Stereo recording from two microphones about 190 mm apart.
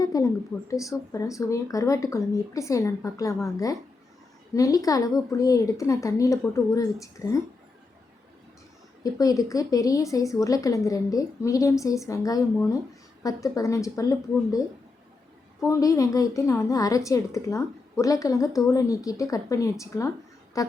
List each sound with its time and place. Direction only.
0.0 s a sound: 20° left (ahead or behind)
0.7 s a woman's voice: 15° left (ahead or behind)
9.1 s a woman's voice: 20° left (ahead or behind)
15.6 s a woman's voice: 15° left (ahead or behind)